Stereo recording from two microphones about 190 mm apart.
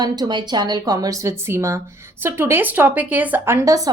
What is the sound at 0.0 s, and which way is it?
A woman's voice, 20° right (ahead or behind).